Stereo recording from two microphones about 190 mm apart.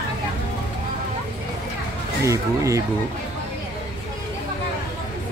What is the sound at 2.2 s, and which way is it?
Speech, 15° right (ahead or behind).